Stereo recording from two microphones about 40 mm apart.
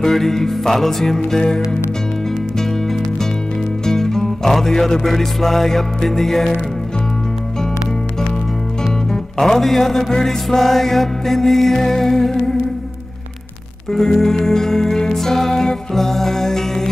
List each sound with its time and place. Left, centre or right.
0.0 s music: centre
1.4 s music: centre
3.8 s music: centre
9.1 s music: centre
13.9 s music: centre